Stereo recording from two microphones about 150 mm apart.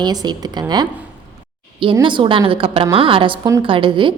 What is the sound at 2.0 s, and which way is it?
A woman's voice, 35° right (ahead or behind).